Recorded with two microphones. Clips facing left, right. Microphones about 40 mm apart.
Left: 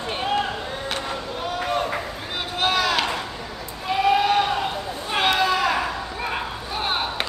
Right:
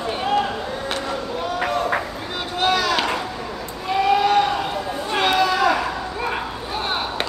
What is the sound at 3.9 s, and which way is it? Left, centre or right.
Sheep, centre.